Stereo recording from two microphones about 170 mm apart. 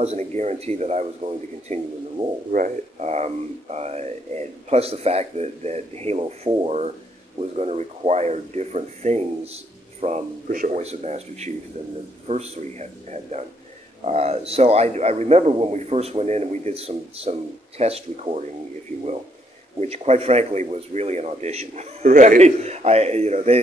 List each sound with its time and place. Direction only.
0.0 s speech: 40° right (ahead or behind)
10.5 s a man's voice: 55° right (ahead or behind)
10.8 s speech: 40° right (ahead or behind)
19.8 s speech: 40° right (ahead or behind)